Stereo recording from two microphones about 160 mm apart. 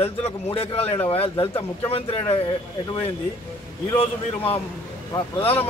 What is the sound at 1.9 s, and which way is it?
Speech, 35° left (ahead or behind).